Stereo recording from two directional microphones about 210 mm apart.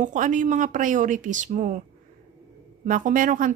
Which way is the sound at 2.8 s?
40° right (ahead or behind).